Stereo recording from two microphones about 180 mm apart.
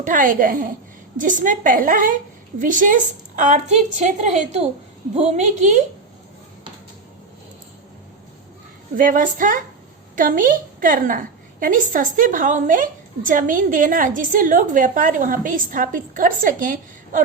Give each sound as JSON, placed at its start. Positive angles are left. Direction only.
{"t": 0.0, "sound": "a woman's voice", "side_deg": -50}
{"t": 9.0, "sound": "a woman's voice", "side_deg": -50}